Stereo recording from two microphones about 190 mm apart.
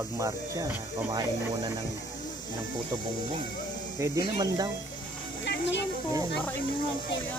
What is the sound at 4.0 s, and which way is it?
Speech, 15° right (ahead or behind).